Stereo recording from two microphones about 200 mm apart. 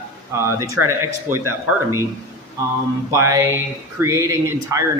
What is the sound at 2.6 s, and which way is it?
A man's voice, 15° right (ahead or behind).